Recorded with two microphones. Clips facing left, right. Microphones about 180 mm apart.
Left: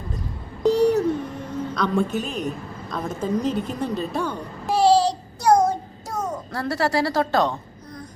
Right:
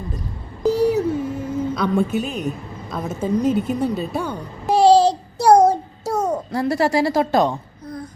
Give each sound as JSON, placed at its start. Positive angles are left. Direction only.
{"t": 0.6, "sound": "a sound", "side_deg": -5}
{"t": 2.9, "sound": "a woman's voice", "side_deg": -5}
{"t": 5.4, "sound": "child singing", "side_deg": -35}
{"t": 6.5, "sound": "a woman's voice", "side_deg": -15}